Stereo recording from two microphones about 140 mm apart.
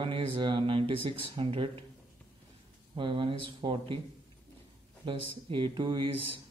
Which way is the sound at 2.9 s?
35° right (ahead or behind).